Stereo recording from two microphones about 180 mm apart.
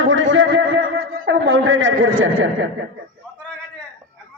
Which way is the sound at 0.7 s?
55° right (ahead or behind).